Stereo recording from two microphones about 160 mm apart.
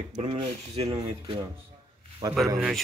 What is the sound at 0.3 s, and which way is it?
Speech, 40° right (ahead or behind).